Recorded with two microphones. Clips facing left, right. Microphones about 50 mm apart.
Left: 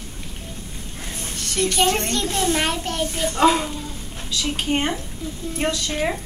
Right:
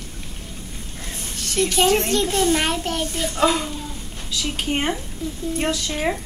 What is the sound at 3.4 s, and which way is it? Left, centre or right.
Speech, left.